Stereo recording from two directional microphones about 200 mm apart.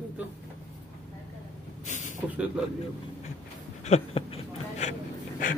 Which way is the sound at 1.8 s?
40° left (ahead or behind).